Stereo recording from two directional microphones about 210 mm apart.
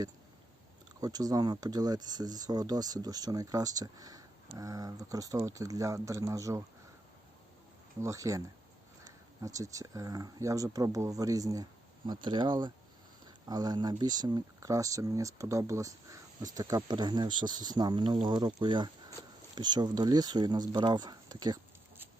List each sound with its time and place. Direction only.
1.0 s speech: 15° right (ahead or behind)
8.0 s speech: 15° right (ahead or behind)